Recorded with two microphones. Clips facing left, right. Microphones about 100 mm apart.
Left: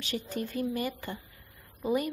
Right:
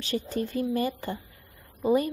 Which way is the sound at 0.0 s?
35° right (ahead or behind).